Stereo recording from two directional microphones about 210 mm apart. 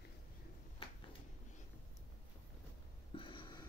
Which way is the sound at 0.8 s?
25° left (ahead or behind).